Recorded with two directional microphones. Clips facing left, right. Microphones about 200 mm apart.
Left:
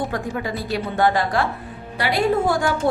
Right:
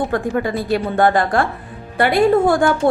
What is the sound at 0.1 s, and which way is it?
A woman's voice, 55° right (ahead or behind).